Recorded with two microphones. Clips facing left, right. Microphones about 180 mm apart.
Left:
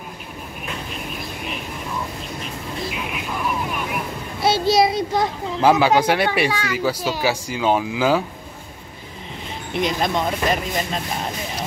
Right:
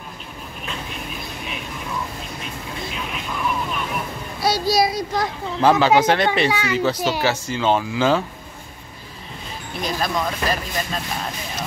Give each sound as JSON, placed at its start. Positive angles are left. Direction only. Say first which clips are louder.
{"t": 2.8, "sound": "vehicle", "louder": "left 2 dB", "side_deg": 5}
{"t": 4.4, "sound": "a child's voice", "louder": "left 2 dB", "side_deg": 25}
{"t": 5.6, "sound": "speech", "louder": "even", "side_deg": 10}
{"t": 9.8, "sound": "speech", "louder": "left 3 dB", "side_deg": 20}